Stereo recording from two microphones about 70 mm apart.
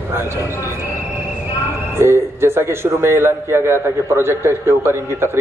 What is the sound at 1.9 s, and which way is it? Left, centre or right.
A man's voice, right.